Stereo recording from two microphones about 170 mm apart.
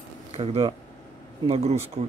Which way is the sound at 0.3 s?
35° right (ahead or behind).